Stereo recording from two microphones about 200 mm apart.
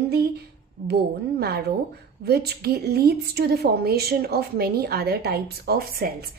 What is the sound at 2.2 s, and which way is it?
A woman's voice, 50° right (ahead or behind).